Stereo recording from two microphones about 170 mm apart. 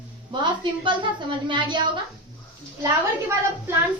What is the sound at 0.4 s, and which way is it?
A woman's voice, 30° right (ahead or behind).